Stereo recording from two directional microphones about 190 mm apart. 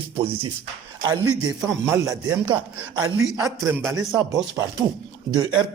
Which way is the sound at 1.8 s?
15° right (ahead or behind).